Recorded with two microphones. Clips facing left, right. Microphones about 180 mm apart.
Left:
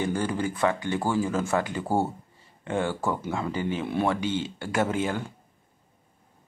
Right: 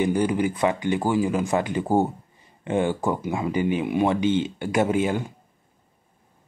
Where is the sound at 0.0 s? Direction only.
15° right (ahead or behind).